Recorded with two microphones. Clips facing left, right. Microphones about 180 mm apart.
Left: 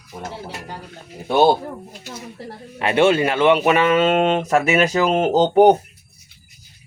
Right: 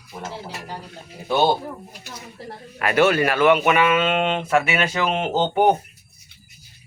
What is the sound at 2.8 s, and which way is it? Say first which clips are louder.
Speech: left 2 dB; 25° left (ahead or behind).